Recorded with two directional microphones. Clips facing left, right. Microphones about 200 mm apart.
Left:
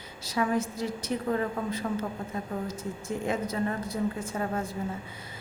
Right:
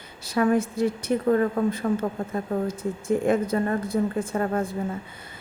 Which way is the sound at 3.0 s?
55° right (ahead or behind).